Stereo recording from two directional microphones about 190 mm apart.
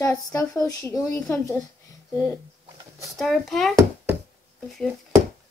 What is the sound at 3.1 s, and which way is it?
A child's voice, centre (ahead or behind).